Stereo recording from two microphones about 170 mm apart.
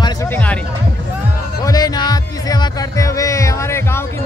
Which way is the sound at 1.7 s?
25° left (ahead or behind).